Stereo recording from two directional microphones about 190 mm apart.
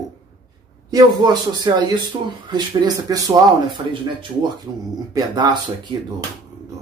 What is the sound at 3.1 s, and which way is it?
Speech, 20° right (ahead or behind).